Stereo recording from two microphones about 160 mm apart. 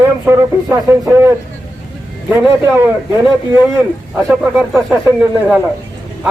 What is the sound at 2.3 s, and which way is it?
Speech, 15° right (ahead or behind).